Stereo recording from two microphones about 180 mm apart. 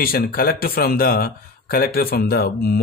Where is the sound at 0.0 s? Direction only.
55° left (ahead or behind).